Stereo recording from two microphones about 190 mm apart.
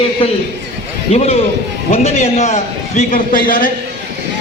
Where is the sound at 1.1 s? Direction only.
35° left (ahead or behind).